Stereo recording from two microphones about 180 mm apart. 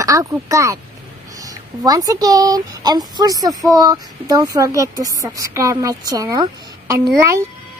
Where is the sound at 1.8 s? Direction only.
20° right (ahead or behind).